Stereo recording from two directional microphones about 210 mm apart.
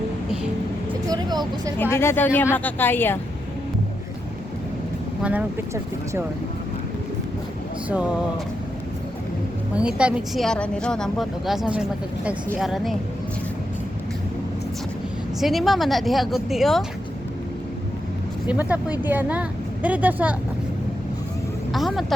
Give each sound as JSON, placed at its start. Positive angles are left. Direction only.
{"t": 1.1, "sound": "vehicle", "side_deg": -20}
{"t": 1.8, "sound": "speech", "side_deg": 10}
{"t": 5.2, "sound": "speech", "side_deg": -5}
{"t": 9.7, "sound": "a woman's voice", "side_deg": -5}
{"t": 15.4, "sound": "a woman's voice", "side_deg": 0}
{"t": 18.4, "sound": "speech", "side_deg": -5}
{"t": 21.7, "sound": "vehicle", "side_deg": 0}